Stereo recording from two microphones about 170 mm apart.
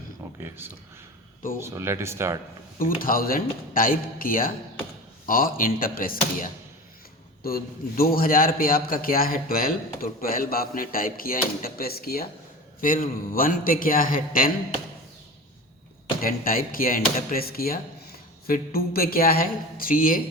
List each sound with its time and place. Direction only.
0.3 s speech: 15° right (ahead or behind)
2.7 s a man's voice: 55° left (ahead or behind)
16.2 s a man's voice: 55° left (ahead or behind)